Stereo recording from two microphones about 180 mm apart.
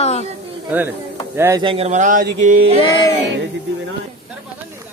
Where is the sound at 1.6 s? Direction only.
35° right (ahead or behind).